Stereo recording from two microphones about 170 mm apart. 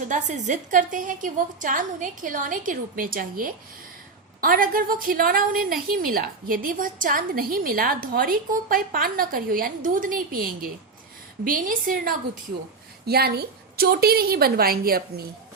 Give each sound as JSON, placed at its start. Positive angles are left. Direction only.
{"t": 0.1, "sound": "a woman's voice", "side_deg": -45}
{"t": 13.1, "sound": "a woman's voice", "side_deg": -70}